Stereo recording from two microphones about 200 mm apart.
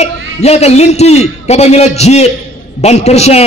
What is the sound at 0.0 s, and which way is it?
A man's voice, 30° left (ahead or behind).